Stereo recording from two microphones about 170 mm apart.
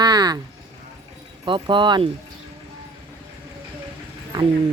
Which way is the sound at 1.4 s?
30° right (ahead or behind).